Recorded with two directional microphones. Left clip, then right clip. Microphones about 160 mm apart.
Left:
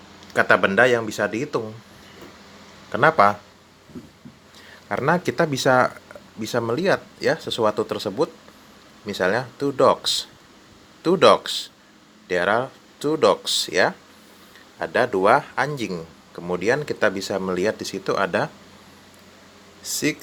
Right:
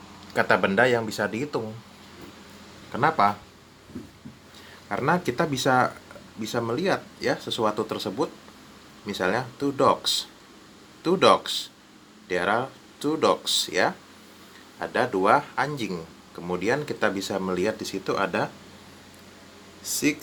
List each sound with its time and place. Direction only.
0.3 s speech: 15° left (ahead or behind)
2.9 s speech: 35° left (ahead or behind)
4.9 s speech: 40° left (ahead or behind)
19.8 s speech: 40° left (ahead or behind)